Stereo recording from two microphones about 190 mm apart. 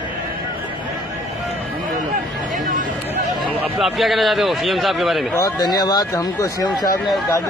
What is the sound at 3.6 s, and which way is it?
A man's voice, centre (ahead or behind).